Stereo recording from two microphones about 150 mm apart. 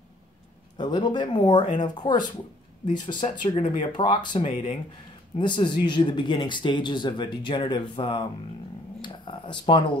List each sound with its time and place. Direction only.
0.7 s speech: 30° left (ahead or behind)
3.5 s speech: 50° left (ahead or behind)
3.9 s speech: 30° left (ahead or behind)
9.0 s a sound: 30° left (ahead or behind)